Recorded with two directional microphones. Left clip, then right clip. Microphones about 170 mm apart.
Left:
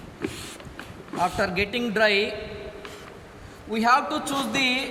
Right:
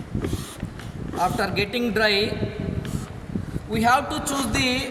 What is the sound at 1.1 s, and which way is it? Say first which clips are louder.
A man's voice: right 1 dB; 10° left (ahead or behind).